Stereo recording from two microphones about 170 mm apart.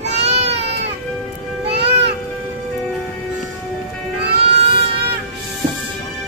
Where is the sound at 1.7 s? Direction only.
80° right.